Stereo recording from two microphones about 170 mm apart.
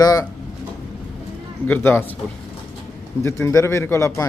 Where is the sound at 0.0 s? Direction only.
20° left (ahead or behind).